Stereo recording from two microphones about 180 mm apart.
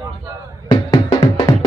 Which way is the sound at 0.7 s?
30° left (ahead or behind).